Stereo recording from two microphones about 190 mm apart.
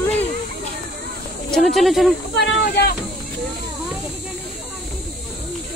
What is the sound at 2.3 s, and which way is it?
Speech, 60° left (ahead or behind).